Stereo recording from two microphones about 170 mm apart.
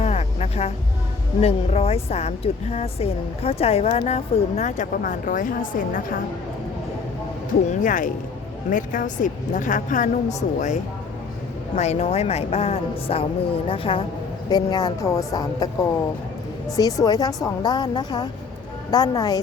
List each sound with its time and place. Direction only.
0.0 s music: 40° left (ahead or behind)
1.4 s speech: 35° left (ahead or behind); by 6.1 s 55° left (ahead or behind)
7.7 s a woman's voice: 50° left (ahead or behind); by 19.4 s 25° left (ahead or behind)